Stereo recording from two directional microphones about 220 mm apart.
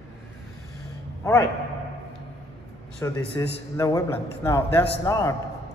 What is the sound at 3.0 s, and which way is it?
A man's voice, 15° left (ahead or behind).